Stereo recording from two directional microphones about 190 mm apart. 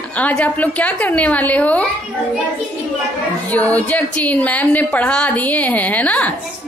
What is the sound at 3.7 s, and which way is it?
A woman's voice, 10° left (ahead or behind).